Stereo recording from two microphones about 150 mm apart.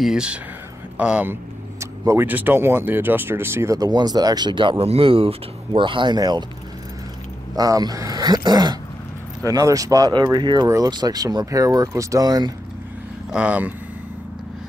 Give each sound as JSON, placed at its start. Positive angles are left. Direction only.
{"t": 0.0, "sound": "speech", "side_deg": -5}
{"t": 7.5, "sound": "speech", "side_deg": -25}
{"t": 13.3, "sound": "speech", "side_deg": -10}